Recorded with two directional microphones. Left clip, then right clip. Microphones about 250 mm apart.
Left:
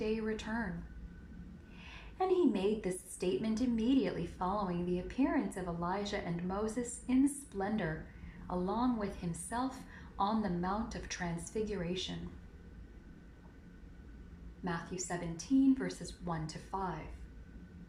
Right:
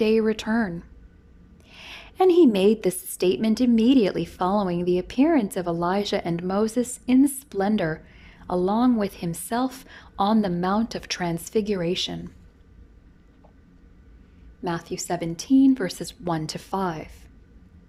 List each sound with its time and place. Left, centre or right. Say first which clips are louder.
0.0 s a woman's voice: right 16 dB; right
1.9 s a woman's voice: right 14 dB; right
14.8 s a woman's voice: right 12 dB; right